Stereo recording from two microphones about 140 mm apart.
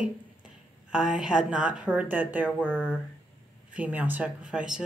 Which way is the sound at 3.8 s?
10° right (ahead or behind).